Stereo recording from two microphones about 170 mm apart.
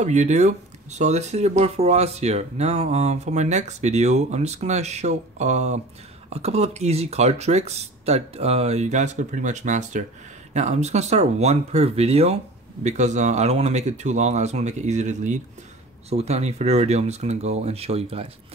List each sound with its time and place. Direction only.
0.0 s speech: 45° right (ahead or behind)